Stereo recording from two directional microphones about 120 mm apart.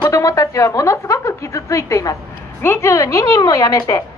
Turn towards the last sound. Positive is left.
turn(degrees=30)  # may be behind; listen again after turning